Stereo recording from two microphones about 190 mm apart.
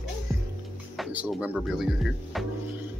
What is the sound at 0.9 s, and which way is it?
Speech, 5° right (ahead or behind).